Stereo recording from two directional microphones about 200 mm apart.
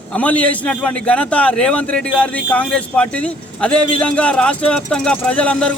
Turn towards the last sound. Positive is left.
turn(degrees=5)  # may be behind; listen again after turning